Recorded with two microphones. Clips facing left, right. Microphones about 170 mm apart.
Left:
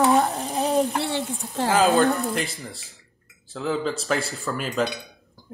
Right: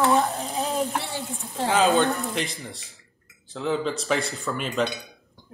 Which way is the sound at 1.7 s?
Centre (ahead or behind).